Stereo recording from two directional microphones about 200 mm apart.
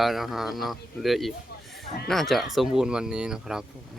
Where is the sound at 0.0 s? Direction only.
Centre (ahead or behind).